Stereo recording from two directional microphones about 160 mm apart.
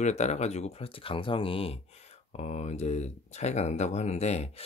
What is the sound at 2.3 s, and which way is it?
Speech, 45° left (ahead or behind).